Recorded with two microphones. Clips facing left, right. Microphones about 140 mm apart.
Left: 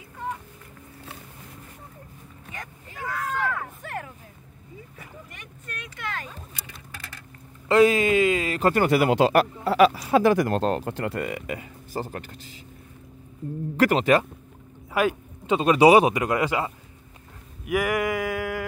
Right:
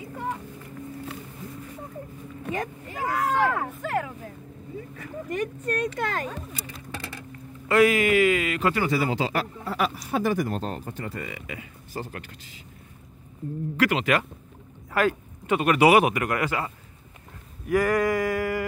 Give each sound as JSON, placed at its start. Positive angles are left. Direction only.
{"t": 2.5, "sound": "speech", "side_deg": -30}
{"t": 3.2, "sound": "speech", "side_deg": -75}
{"t": 3.8, "sound": "speech", "side_deg": -90}
{"t": 5.3, "sound": "speech", "side_deg": -45}
{"t": 7.6, "sound": "speech", "side_deg": 25}
{"t": 8.7, "sound": "speech", "side_deg": 60}
{"t": 13.7, "sound": "speech", "side_deg": 40}
{"t": 15.0, "sound": "speech", "side_deg": 20}
{"t": 17.6, "sound": "a sound", "side_deg": 10}